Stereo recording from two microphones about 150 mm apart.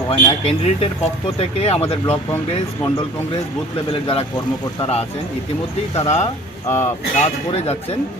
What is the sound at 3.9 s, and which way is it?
Speech, 35° left (ahead or behind).